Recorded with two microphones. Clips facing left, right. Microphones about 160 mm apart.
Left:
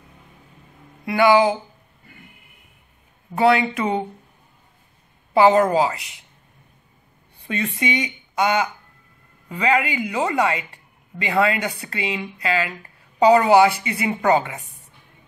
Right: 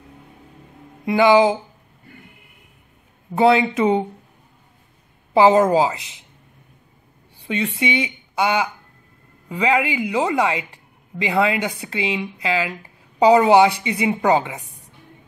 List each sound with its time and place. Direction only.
1.0 s a woman's voice: 20° right (ahead or behind)
3.3 s a woman's voice: 20° right (ahead or behind)
5.3 s a woman's voice: 20° right (ahead or behind)
7.4 s speech: 10° right (ahead or behind)